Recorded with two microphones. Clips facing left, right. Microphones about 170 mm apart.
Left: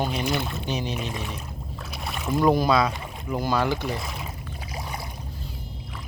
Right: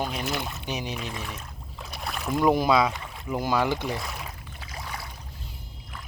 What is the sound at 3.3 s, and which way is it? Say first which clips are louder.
Speech: left 1 dB; 15° right (ahead or behind).